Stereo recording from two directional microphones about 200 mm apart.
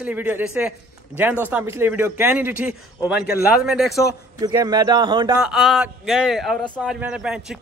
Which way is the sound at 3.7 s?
Centre (ahead or behind).